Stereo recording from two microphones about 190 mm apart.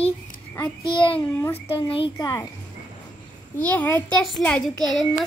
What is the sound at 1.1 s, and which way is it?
Speech, 15° left (ahead or behind).